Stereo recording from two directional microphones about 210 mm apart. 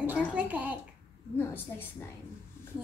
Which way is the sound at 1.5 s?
10° left (ahead or behind).